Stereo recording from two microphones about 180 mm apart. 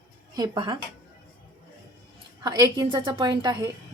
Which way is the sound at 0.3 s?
25° right (ahead or behind).